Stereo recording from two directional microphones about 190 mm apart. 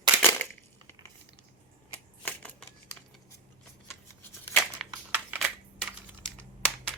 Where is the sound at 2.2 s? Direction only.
5° left (ahead or behind).